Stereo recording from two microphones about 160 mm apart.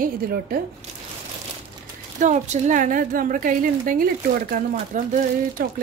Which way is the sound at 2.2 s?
50° right (ahead or behind).